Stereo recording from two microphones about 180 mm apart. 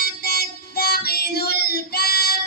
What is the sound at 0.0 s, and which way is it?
Child singing, 60° left (ahead or behind).